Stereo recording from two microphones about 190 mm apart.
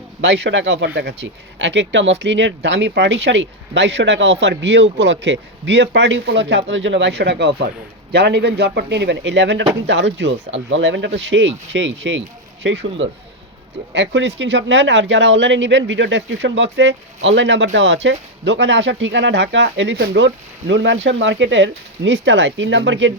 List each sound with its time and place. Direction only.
0.2 s speech: 70° right (ahead or behind)